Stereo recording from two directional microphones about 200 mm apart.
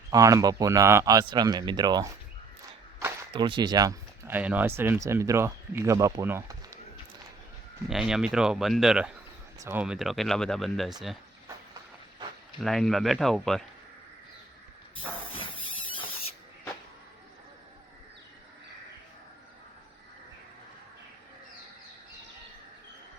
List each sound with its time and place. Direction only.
0.1 s speech: 15° right (ahead or behind)
3.0 s a sound: 25° right (ahead or behind)
4.4 s speech: 10° right (ahead or behind)
7.9 s speech: 5° right (ahead or behind)
12.5 s speech: centre (ahead or behind)
15.4 s a sound: 25° left (ahead or behind)